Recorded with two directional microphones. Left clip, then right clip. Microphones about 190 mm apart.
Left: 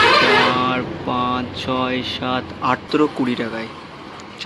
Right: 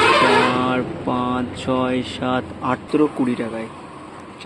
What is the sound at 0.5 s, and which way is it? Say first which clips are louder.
Speech: left 1 dB; 20° right (ahead or behind).